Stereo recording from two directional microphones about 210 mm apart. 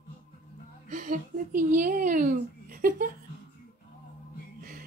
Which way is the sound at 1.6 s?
40° right (ahead or behind).